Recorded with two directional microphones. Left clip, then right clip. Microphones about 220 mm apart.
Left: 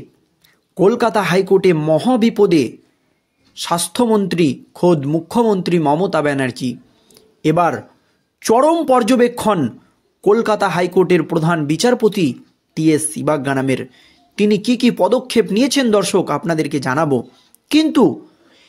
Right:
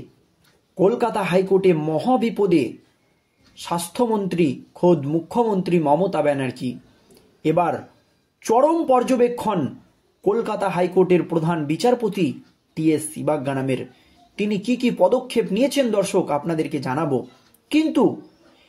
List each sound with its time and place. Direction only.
0.7 s speech: 50° left (ahead or behind)